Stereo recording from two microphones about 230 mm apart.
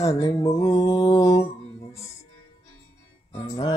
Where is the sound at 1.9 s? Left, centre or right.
Centre.